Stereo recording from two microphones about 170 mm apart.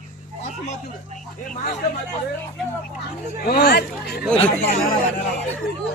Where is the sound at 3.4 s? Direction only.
65° left (ahead or behind).